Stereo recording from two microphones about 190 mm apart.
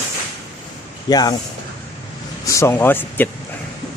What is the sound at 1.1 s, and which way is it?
Speech, 20° left (ahead or behind).